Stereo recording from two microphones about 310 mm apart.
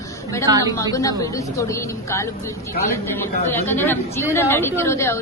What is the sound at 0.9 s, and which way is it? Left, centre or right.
A woman's voice, centre.